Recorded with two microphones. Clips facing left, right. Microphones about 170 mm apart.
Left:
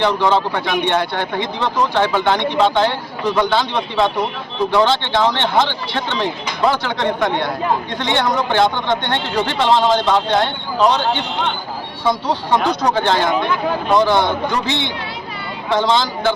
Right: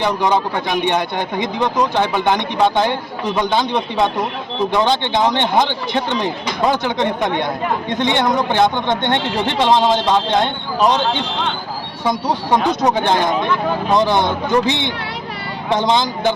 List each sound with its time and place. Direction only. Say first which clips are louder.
0.0 s a man's voice: left 1 dB; 15° right (ahead or behind)
12.0 s a man's voice: even; 15° right (ahead or behind)